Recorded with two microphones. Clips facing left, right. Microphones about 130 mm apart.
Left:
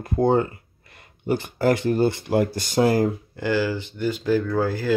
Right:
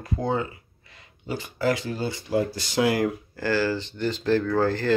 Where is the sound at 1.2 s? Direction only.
55° left (ahead or behind).